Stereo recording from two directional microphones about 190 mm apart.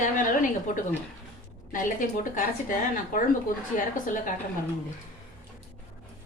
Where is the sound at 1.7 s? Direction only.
45° left (ahead or behind).